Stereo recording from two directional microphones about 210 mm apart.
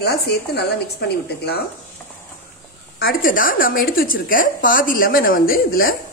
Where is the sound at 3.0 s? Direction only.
45° left (ahead or behind).